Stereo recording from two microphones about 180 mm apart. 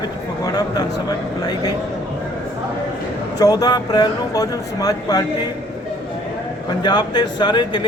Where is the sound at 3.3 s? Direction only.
20° left (ahead or behind).